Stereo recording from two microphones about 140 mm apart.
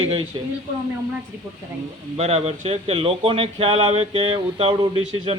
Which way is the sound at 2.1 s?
45° right (ahead or behind).